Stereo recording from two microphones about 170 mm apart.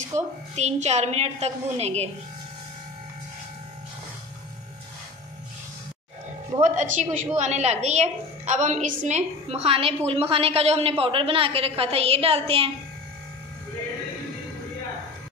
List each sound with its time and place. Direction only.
0.6 s a woman's voice: 40° right (ahead or behind)
6.6 s a woman's voice: 45° right (ahead or behind)